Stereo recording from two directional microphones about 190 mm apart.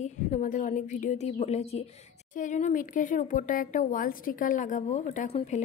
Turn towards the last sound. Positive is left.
turn(degrees=35)  # may be behind; listen again after turning